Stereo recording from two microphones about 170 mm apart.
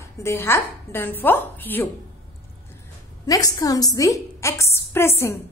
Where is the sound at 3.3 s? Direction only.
20° left (ahead or behind).